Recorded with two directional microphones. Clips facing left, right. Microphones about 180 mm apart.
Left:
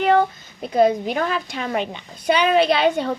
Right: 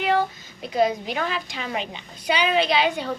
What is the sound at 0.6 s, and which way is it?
A woman's voice, 50° left (ahead or behind).